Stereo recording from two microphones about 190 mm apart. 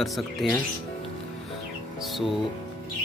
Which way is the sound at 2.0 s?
Centre (ahead or behind).